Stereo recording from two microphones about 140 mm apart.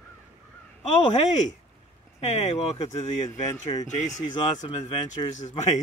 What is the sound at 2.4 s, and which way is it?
Speech, 55° left (ahead or behind).